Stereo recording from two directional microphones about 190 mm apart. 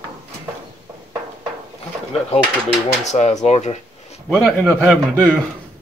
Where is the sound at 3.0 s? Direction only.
35° left (ahead or behind).